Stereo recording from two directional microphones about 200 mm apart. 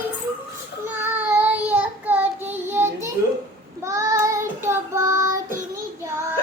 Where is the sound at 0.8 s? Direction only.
10° right (ahead or behind).